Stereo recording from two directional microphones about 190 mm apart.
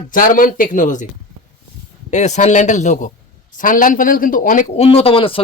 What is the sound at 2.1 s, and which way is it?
A man's voice, 40° left (ahead or behind).